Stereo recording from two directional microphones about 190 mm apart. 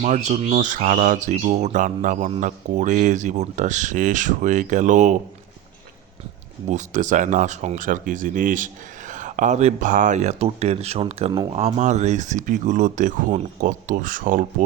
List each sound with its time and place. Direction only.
0.0 s speech: 40° right (ahead or behind)
6.7 s speech: 40° right (ahead or behind)